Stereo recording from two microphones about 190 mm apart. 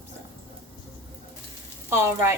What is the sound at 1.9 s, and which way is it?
Speech, 15° right (ahead or behind).